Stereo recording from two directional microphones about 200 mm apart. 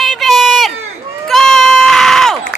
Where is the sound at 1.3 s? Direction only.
Centre (ahead or behind).